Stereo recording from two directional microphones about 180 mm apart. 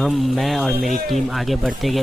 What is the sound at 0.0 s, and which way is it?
Speech, centre (ahead or behind).